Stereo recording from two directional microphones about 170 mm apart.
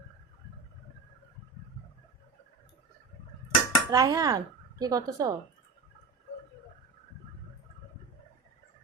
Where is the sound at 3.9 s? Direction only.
20° right (ahead or behind).